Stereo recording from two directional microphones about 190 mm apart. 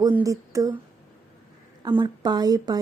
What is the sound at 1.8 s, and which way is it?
A woman's voice, 25° right (ahead or behind).